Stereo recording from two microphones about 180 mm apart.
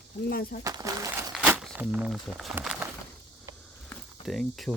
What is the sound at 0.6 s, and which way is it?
Speech, 20° right (ahead or behind).